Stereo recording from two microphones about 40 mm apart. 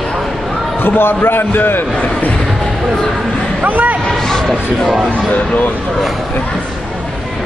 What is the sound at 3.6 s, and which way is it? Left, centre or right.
Speech, right.